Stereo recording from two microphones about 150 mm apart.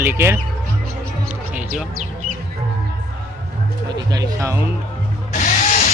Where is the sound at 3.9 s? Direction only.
25° right (ahead or behind).